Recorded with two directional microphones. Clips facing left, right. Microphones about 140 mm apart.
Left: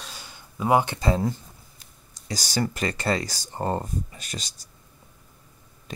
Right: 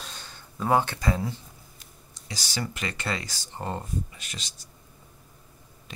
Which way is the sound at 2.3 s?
40° left (ahead or behind).